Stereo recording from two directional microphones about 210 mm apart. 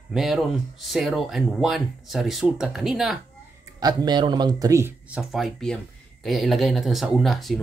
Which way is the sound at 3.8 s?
20° right (ahead or behind).